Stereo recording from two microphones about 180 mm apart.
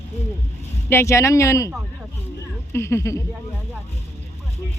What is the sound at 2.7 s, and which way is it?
Speech, 15° left (ahead or behind).